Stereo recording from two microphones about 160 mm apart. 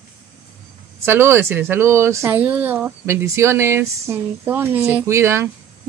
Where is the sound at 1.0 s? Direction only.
15° right (ahead or behind).